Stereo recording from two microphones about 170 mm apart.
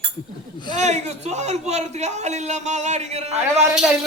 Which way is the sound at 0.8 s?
40° right (ahead or behind).